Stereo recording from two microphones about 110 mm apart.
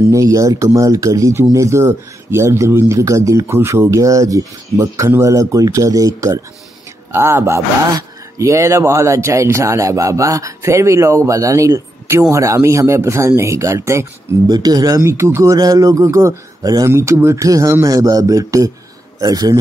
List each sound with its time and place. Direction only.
0.0 s a man's voice: 30° right (ahead or behind)